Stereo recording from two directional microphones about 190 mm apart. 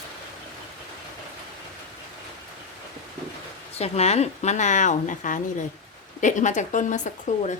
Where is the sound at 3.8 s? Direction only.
35° left (ahead or behind).